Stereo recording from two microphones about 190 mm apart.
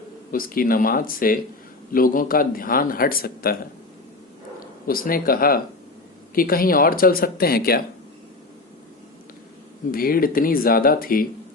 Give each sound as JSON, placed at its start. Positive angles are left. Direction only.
{"t": 0.3, "sound": "speech", "side_deg": 50}
{"t": 4.9, "sound": "speech", "side_deg": 50}
{"t": 9.9, "sound": "speech", "side_deg": 50}